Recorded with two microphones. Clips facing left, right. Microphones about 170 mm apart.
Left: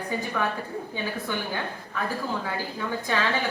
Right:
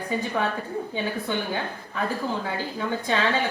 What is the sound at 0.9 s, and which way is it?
Speech, 20° right (ahead or behind).